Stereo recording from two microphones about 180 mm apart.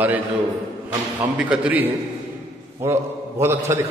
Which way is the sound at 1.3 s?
5° right (ahead or behind).